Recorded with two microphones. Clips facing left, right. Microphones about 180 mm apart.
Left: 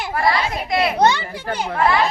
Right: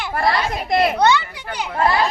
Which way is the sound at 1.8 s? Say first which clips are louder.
Even; 40° right (ahead or behind).